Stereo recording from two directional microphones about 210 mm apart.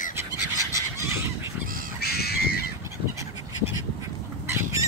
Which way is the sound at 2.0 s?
50° left (ahead or behind).